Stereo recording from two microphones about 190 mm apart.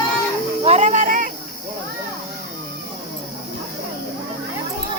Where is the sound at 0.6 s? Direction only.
40° right (ahead or behind).